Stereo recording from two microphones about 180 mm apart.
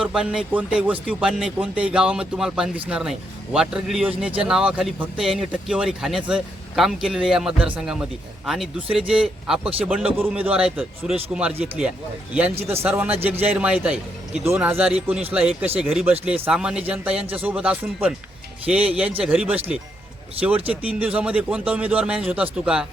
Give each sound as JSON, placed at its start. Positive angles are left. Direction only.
{"t": 0.0, "sound": "speech", "side_deg": -5}
{"t": 12.5, "sound": "a man's voice", "side_deg": -35}
{"t": 12.8, "sound": "speech", "side_deg": -10}